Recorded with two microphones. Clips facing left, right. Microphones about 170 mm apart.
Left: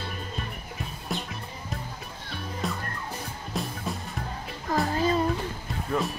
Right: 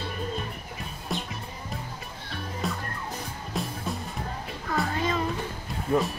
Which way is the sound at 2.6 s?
Centre (ahead or behind).